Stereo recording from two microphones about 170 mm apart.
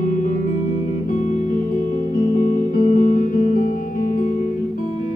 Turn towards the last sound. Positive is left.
turn(degrees=55)  # may be behind; listen again after turning